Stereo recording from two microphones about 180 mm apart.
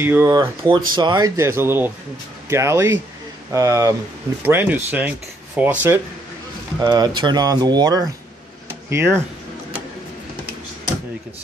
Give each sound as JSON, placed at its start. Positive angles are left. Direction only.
{"t": 0.0, "sound": "speech", "side_deg": -15}
{"t": 0.4, "sound": "speech", "side_deg": -25}
{"t": 6.8, "sound": "speech", "side_deg": -25}